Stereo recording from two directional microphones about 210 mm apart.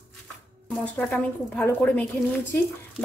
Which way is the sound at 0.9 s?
5° left (ahead or behind).